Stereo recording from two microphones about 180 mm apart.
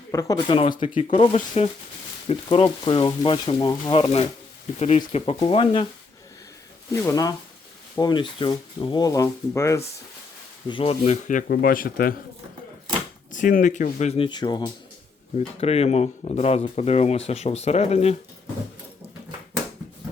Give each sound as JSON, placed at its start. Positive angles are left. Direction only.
{"t": 0.1, "sound": "speech", "side_deg": 20}
{"t": 4.8, "sound": "speech", "side_deg": 40}
{"t": 6.9, "sound": "speech", "side_deg": 15}
{"t": 10.7, "sound": "speech", "side_deg": 30}
{"t": 13.3, "sound": "speech", "side_deg": 45}
{"t": 15.4, "sound": "speech", "side_deg": 35}